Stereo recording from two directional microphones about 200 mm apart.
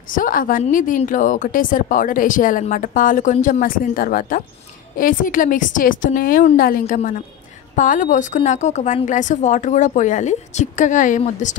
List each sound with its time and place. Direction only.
0.1 s a woman's voice: 45° left (ahead or behind)